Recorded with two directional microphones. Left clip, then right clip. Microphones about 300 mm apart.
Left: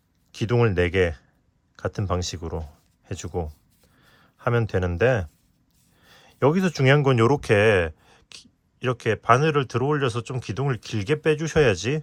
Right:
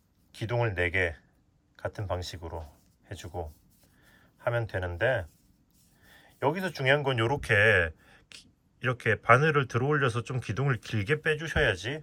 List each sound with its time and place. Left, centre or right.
0.3 s speech: left
4.5 s speech: left